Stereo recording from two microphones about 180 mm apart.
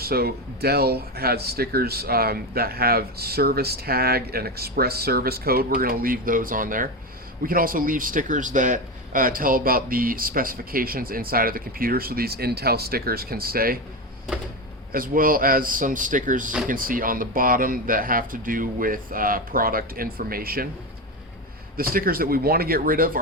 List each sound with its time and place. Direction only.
0.0 s a man's voice: 60° right (ahead or behind)
14.9 s speech: 50° right (ahead or behind)
21.8 s a man's voice: 55° right (ahead or behind)